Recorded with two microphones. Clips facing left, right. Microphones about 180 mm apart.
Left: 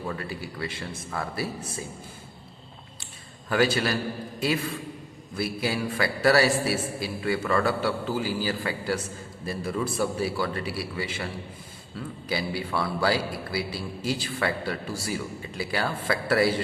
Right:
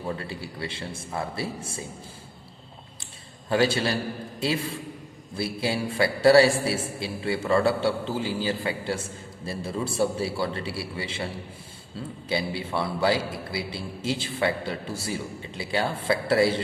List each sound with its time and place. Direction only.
0.1 s a man's voice: 25° right (ahead or behind)
3.5 s a man's voice: 30° right (ahead or behind)
5.4 s a man's voice: 25° right (ahead or behind)